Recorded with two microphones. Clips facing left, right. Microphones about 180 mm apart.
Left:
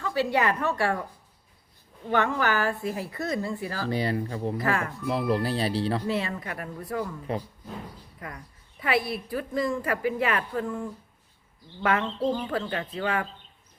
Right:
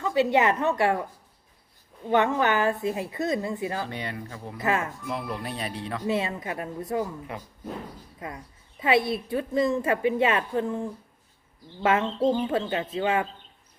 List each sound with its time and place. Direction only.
0.0 s a woman's voice: 20° right (ahead or behind)
2.0 s a woman's voice: 20° right (ahead or behind)
3.8 s speech: 35° left (ahead or behind)
4.5 s a woman's voice: 20° right (ahead or behind)
5.0 s speech: 35° left (ahead or behind)
6.1 s a woman's voice: 20° right (ahead or behind)
7.3 s speech: 30° left (ahead or behind)
8.2 s a woman's voice: 25° right (ahead or behind)